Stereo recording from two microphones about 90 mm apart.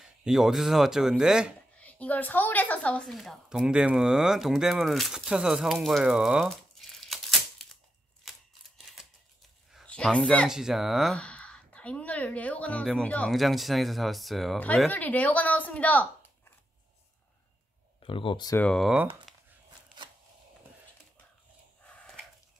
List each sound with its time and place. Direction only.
0.0 s speech: 5° right (ahead or behind)
1.8 s a woman's voice: 15° left (ahead or behind)
3.1 s speech: centre (ahead or behind)
6.5 s crumpling: centre (ahead or behind)
8.3 s scissors: 5° right (ahead or behind)
9.8 s speech: 10° left (ahead or behind)
10.5 s speech: 5° right (ahead or behind)
11.1 s a woman's voice: 15° left (ahead or behind)
13.3 s speech: centre (ahead or behind)
14.9 s speech: 20° left (ahead or behind)
18.0 s speech: 75° left (ahead or behind)
19.3 s a sound: centre (ahead or behind)
21.8 s a sound: 10° left (ahead or behind)